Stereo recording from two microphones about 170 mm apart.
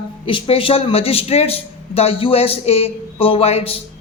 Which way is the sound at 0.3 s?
30° left (ahead or behind).